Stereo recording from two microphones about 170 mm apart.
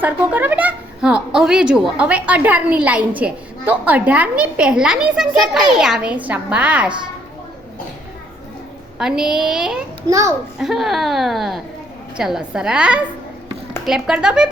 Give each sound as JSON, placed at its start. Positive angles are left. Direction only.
{"t": 0.0, "sound": "a woman's voice", "side_deg": -10}
{"t": 9.0, "sound": "speech", "side_deg": -5}
{"t": 10.1, "sound": "a child's voice", "side_deg": -20}
{"t": 10.6, "sound": "speech", "side_deg": 0}